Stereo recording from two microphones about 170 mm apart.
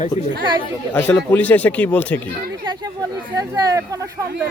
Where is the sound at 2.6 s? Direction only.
25° right (ahead or behind).